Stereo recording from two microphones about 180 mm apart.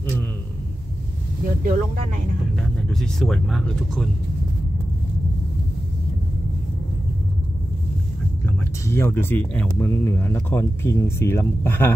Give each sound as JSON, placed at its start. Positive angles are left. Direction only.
{"t": 1.4, "sound": "speech", "side_deg": -45}
{"t": 2.9, "sound": "speech", "side_deg": 0}
{"t": 8.5, "sound": "speech", "side_deg": 15}